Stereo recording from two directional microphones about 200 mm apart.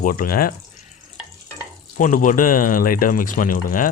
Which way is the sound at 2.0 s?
40° left (ahead or behind).